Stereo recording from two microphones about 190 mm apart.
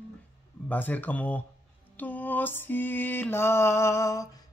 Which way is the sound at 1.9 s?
10° left (ahead or behind).